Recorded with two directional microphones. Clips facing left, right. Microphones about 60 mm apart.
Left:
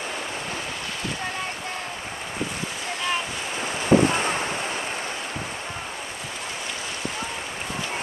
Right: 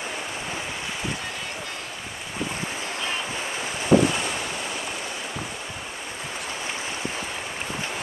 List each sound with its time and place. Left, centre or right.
3.6 s waves: left